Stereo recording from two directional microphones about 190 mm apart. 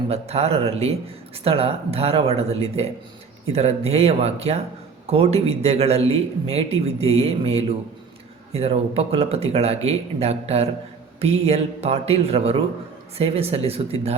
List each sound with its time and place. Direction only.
0.1 s a man's voice: 35° right (ahead or behind)